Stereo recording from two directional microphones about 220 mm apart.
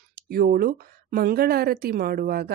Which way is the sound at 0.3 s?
40° right (ahead or behind).